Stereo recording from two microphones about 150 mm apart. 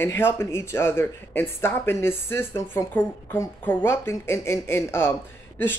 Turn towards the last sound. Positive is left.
turn(degrees=15)  # may be behind; listen again after turning